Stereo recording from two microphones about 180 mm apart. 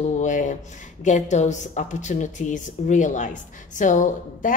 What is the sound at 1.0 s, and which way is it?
Speech, 40° left (ahead or behind).